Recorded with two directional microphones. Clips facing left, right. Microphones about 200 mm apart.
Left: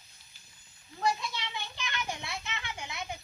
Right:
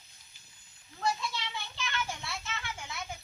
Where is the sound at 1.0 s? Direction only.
15° left (ahead or behind).